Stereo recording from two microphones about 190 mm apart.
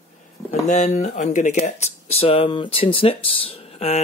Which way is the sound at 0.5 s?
40° left (ahead or behind).